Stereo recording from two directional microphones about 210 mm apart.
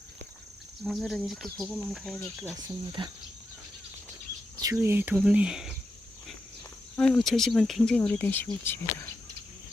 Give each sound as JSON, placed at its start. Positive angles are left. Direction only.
{"t": 0.9, "sound": "speech", "side_deg": 0}
{"t": 2.6, "sound": "speech", "side_deg": -20}
{"t": 4.6, "sound": "speech", "side_deg": -15}
{"t": 6.9, "sound": "speech", "side_deg": 5}